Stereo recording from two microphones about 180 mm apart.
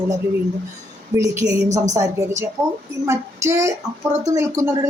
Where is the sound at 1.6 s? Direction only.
40° right (ahead or behind).